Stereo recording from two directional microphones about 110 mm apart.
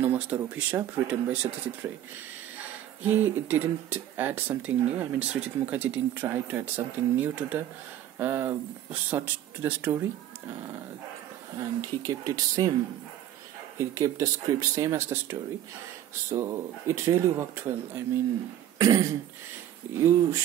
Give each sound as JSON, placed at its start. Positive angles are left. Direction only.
{"t": 0.0, "sound": "speech", "side_deg": -15}
{"t": 3.0, "sound": "speech", "side_deg": -15}
{"t": 11.5, "sound": "speech", "side_deg": -35}
{"t": 13.7, "sound": "speech", "side_deg": -30}
{"t": 18.8, "sound": "a sound", "side_deg": -30}
{"t": 20.0, "sound": "speech", "side_deg": -25}